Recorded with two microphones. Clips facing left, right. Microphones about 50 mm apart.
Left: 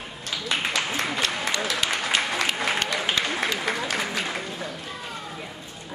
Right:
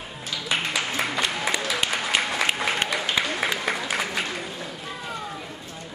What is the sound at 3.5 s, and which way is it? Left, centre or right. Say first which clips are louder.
Applause: even; centre.